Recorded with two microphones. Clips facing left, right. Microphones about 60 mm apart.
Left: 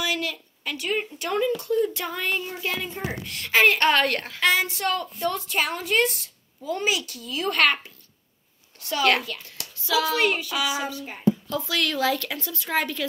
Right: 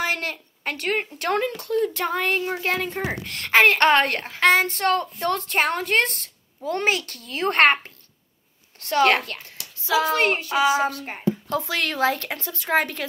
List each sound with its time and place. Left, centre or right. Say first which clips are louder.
0.0 s a woman's voice: right 2 dB; right
4.0 s a woman's voice: right 1 dB; right
4.4 s a woman's voice: right 5 dB; right
9.8 s speech: right 2 dB; right
10.9 s speech: left 1 dB; right